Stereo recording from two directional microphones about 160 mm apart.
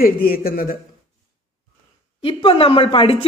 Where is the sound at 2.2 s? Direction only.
35° left (ahead or behind).